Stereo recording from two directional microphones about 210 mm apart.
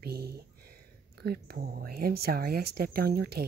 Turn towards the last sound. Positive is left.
turn(degrees=-50)  # may be behind; listen again after turning